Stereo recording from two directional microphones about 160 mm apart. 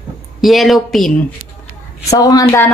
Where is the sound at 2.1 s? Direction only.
20° left (ahead or behind).